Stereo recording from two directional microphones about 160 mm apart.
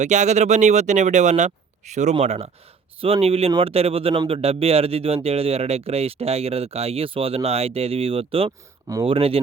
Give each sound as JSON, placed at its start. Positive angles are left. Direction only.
{"t": 0.0, "sound": "speech", "side_deg": -45}